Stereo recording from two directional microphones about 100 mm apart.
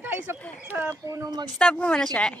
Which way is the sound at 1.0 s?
35° right (ahead or behind).